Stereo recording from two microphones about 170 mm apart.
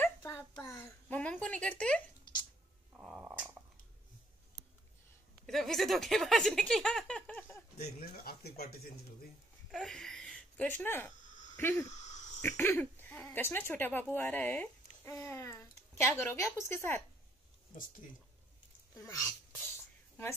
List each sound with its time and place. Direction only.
0.0 s a sound: 15° left (ahead or behind)
3.0 s cat: 5° right (ahead or behind)
5.5 s speech: centre (ahead or behind)
7.7 s speech: 65° left (ahead or behind)
9.7 s speech: centre (ahead or behind)
11.9 s a sound: 45° left (ahead or behind)
12.4 s a sound: 10° left (ahead or behind)
13.2 s speech: 10° left (ahead or behind)
18.9 s speech: 20° left (ahead or behind)